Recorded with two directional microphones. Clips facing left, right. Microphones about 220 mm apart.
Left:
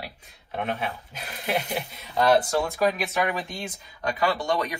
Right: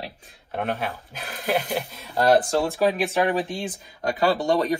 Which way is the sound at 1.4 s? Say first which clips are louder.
Right 3 dB; 45° right (ahead or behind).